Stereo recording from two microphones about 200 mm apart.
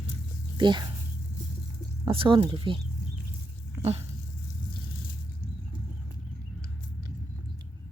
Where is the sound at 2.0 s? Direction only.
25° right (ahead or behind).